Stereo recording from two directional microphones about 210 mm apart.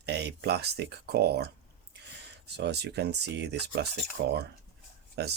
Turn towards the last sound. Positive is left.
turn(degrees=-50)  # may be behind; listen again after turning